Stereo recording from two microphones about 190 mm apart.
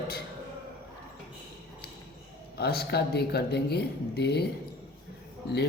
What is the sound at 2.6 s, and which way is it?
Speech, 55° left (ahead or behind).